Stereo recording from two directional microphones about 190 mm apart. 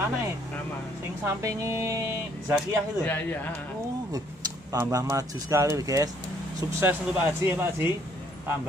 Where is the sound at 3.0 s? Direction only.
10° left (ahead or behind).